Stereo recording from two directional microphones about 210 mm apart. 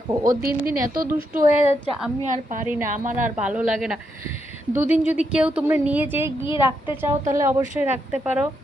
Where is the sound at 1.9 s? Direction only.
Centre (ahead or behind).